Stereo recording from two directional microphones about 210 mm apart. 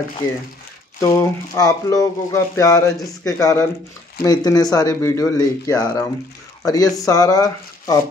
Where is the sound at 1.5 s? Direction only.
15° left (ahead or behind).